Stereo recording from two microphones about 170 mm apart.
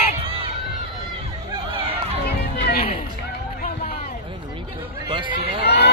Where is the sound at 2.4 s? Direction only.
65° left (ahead or behind).